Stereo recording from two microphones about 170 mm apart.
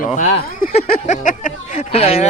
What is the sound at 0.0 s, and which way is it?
Speech, 45° left (ahead or behind).